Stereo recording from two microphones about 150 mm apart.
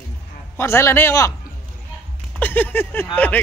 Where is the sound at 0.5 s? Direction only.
15° left (ahead or behind).